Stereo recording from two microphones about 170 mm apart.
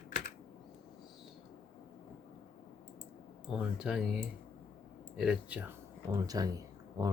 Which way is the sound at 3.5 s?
5° right (ahead or behind).